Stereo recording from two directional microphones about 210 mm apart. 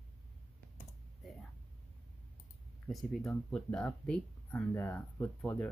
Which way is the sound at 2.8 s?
5° left (ahead or behind).